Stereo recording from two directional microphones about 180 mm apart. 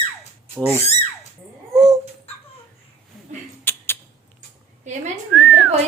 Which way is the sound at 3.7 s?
10° left (ahead or behind).